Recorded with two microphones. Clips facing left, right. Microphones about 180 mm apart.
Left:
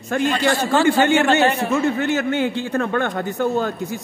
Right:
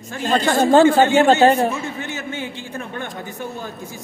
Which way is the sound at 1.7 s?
65° left (ahead or behind).